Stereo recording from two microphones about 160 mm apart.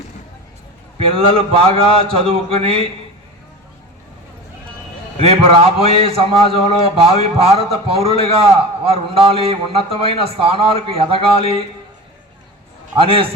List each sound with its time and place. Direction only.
0.9 s a man's voice: 35° right (ahead or behind)
5.2 s a man's voice: 40° right (ahead or behind)
13.0 s a man's voice: 35° right (ahead or behind)